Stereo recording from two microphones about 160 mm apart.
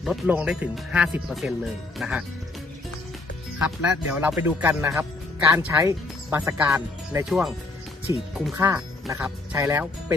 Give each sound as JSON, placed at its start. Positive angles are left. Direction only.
{"t": 0.0, "sound": "speech", "side_deg": -5}
{"t": 3.8, "sound": "speech", "side_deg": -5}
{"t": 7.3, "sound": "speech", "side_deg": 0}
{"t": 8.1, "sound": "speech", "side_deg": -20}